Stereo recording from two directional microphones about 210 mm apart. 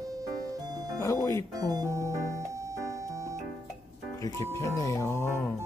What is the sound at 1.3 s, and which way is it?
Speech, 20° right (ahead or behind).